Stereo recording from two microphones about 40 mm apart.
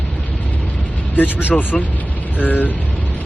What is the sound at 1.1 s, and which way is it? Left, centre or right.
Speech, left.